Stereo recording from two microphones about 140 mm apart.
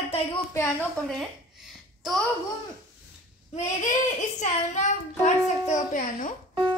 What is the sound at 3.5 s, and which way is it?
A child's voice, 60° left (ahead or behind).